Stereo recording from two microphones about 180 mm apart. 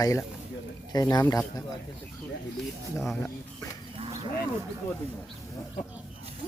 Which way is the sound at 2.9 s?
Centre (ahead or behind).